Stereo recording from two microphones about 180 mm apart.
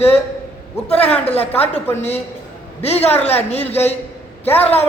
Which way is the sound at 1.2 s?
35° left (ahead or behind).